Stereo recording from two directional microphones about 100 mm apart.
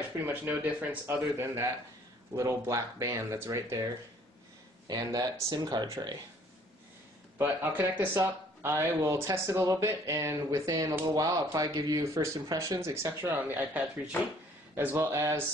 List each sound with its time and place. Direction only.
0.2 s speech: 30° right (ahead or behind)
4.8 s speech: 40° right (ahead or behind)
7.3 s speech: 20° right (ahead or behind)